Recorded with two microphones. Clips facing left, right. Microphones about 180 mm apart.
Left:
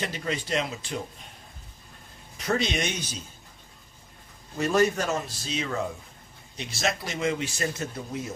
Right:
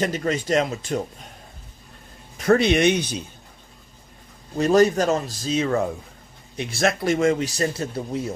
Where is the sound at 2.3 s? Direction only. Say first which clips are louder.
Right 10 dB; 55° right (ahead or behind).